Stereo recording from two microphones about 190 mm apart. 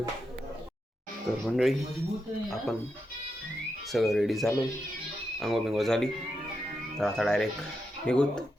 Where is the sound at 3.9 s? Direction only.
Centre (ahead or behind).